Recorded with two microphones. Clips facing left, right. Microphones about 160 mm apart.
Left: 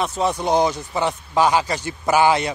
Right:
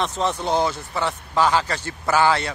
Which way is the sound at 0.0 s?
10° left (ahead or behind).